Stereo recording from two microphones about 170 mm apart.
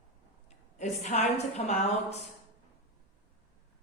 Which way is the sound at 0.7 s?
40° left (ahead or behind).